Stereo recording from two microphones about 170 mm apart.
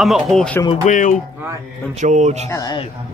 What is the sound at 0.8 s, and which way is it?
Speech, 50° left (ahead or behind).